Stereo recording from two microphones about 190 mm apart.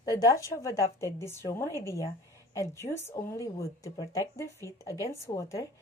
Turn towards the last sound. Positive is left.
turn(degrees=15)  # may be behind; listen again after turning